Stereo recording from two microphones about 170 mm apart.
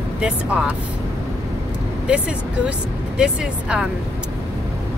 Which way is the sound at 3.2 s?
5° right (ahead or behind).